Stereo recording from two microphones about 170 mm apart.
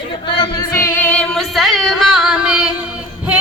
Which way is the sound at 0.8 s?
15° left (ahead or behind).